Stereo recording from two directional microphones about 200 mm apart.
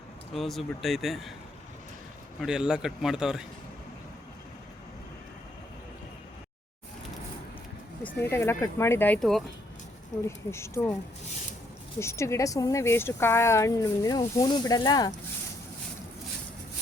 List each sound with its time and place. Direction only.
0.3 s speech: centre (ahead or behind)
2.4 s speech: 5° right (ahead or behind)
8.0 s speech: 10° left (ahead or behind)
11.9 s speech: 15° left (ahead or behind)